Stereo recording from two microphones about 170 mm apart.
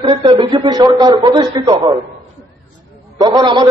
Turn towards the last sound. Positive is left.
turn(degrees=-25)  # may be behind; listen again after turning